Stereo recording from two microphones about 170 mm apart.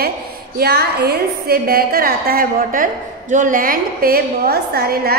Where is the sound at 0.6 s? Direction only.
70° right (ahead or behind).